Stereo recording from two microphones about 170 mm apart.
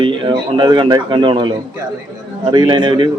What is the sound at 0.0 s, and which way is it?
A man's voice, 30° right (ahead or behind).